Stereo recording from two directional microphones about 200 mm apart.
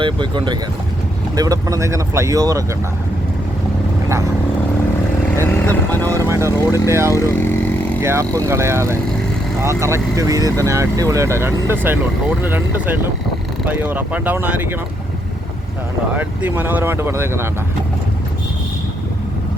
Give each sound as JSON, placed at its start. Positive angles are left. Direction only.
{"t": 0.0, "sound": "speech", "side_deg": -25}
{"t": 5.4, "sound": "speech", "side_deg": 10}
{"t": 6.2, "sound": "speech", "side_deg": -15}
{"t": 7.1, "sound": "vehicle", "side_deg": 15}
{"t": 8.0, "sound": "speech", "side_deg": -15}
{"t": 16.1, "sound": "speech", "side_deg": -10}